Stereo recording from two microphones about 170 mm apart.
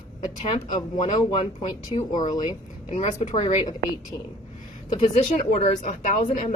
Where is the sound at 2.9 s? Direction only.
40° left (ahead or behind).